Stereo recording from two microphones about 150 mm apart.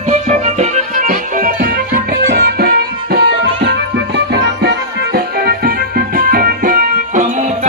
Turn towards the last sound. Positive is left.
turn(degrees=-50)  # may be behind; listen again after turning